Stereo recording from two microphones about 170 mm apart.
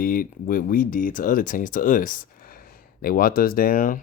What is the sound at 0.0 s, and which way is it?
Speech, 55° left (ahead or behind).